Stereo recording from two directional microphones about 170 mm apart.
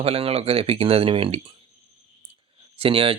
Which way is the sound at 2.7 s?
30° right (ahead or behind).